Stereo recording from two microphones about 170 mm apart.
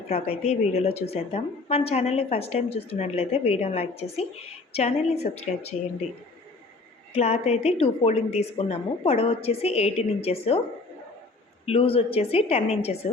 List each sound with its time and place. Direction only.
0.1 s a woman's voice: 35° left (ahead or behind)
7.1 s a woman's voice: 40° left (ahead or behind)
11.6 s a woman's voice: 35° left (ahead or behind)